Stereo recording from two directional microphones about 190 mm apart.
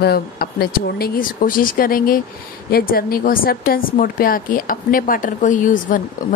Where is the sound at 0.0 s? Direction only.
55° left (ahead or behind).